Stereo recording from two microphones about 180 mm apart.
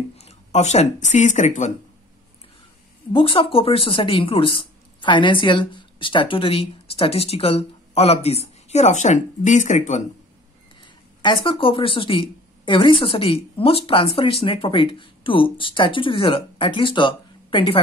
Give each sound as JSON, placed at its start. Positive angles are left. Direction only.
{"t": 0.2, "sound": "speech", "side_deg": 35}
{"t": 3.1, "sound": "speech", "side_deg": 30}
{"t": 10.8, "sound": "speech", "side_deg": 25}